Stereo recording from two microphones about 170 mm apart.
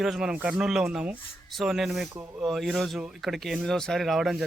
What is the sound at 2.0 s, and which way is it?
Speech, 15° right (ahead or behind).